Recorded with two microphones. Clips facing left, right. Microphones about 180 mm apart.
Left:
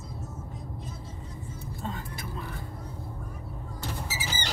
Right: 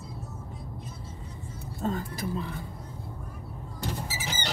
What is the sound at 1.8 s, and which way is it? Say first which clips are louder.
Speech: right 7 dB; 45° right (ahead or behind).